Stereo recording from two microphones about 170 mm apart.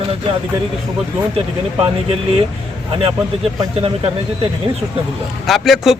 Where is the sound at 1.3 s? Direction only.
35° right (ahead or behind).